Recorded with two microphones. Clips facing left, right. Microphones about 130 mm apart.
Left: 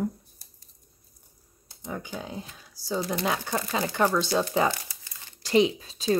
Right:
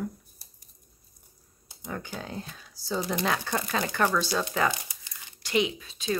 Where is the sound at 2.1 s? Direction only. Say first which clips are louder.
Left 1 dB; 10° left (ahead or behind).